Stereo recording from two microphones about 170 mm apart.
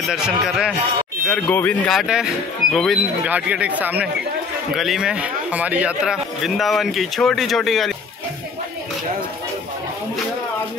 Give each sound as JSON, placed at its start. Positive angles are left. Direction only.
{"t": 0.1, "sound": "speech", "side_deg": -5}
{"t": 1.2, "sound": "speech", "side_deg": 10}